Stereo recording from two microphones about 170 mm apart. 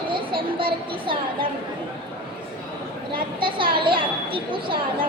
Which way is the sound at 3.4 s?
30° right (ahead or behind).